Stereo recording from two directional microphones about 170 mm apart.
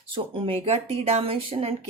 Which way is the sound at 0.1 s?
30° right (ahead or behind).